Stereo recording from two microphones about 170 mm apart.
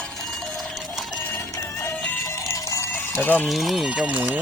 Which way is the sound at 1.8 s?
15° left (ahead or behind).